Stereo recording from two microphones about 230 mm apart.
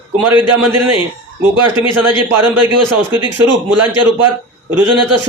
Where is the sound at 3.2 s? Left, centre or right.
Right.